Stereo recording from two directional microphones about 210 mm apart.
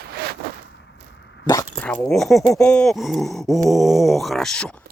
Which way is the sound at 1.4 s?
15° left (ahead or behind).